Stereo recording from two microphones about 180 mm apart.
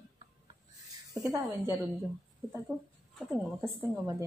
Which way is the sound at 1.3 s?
15° right (ahead or behind).